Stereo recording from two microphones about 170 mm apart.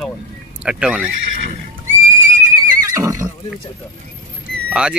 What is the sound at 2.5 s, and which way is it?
Neigh, 15° right (ahead or behind).